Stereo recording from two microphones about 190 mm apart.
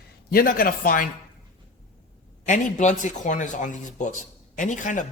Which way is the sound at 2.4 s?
40° left (ahead or behind).